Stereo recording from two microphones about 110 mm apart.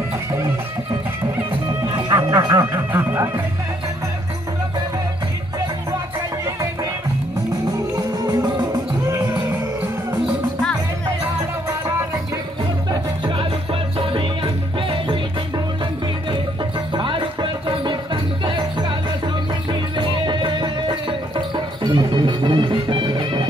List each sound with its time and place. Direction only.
2.0 s music: 30° right (ahead or behind)
6.4 s music: 30° right (ahead or behind)
7.9 s music: 35° right (ahead or behind)
12.9 s music: 45° right (ahead or behind)
13.9 s music: 55° right (ahead or behind)
16.9 s music: 50° right (ahead or behind)